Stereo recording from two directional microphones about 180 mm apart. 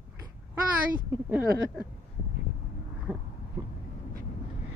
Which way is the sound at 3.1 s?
10° right (ahead or behind).